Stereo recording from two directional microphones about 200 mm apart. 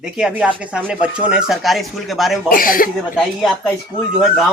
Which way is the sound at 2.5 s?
45° left (ahead or behind).